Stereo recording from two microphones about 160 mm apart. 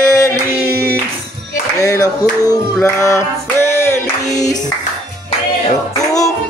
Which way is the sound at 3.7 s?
20° left (ahead or behind).